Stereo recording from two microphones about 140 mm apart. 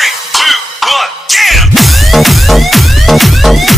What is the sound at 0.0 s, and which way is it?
Music, centre (ahead or behind).